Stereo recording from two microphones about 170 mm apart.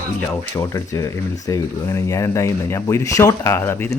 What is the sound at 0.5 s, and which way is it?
Speech, 20° left (ahead or behind).